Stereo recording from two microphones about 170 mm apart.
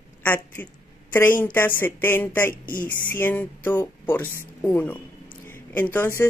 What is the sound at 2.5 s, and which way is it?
Speech, 55° left (ahead or behind).